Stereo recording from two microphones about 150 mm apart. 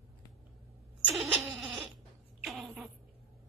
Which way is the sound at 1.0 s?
5° right (ahead or behind).